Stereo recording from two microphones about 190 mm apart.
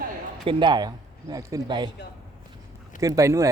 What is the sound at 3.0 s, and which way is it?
Speech, 15° right (ahead or behind).